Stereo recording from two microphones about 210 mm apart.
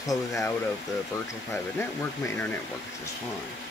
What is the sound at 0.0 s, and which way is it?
Speech, 15° left (ahead or behind).